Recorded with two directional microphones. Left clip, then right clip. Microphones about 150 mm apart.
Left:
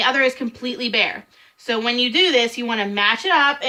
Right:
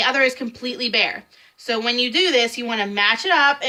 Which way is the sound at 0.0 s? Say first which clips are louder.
Even; 30° left (ahead or behind).